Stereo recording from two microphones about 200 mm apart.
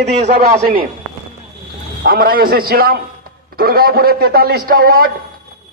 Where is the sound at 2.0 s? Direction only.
45° right (ahead or behind).